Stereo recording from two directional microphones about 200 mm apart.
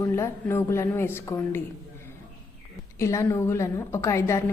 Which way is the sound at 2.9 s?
15° left (ahead or behind).